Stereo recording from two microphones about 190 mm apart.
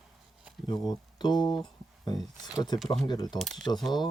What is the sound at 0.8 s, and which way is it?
Speech, 20° left (ahead or behind).